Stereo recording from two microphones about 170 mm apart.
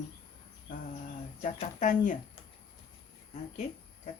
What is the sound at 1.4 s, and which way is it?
Speech, 45° left (ahead or behind).